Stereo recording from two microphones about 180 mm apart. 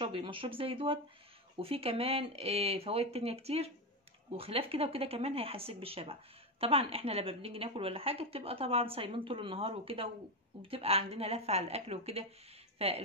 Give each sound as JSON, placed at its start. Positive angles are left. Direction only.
{"t": 0.0, "sound": "a woman's voice", "side_deg": -30}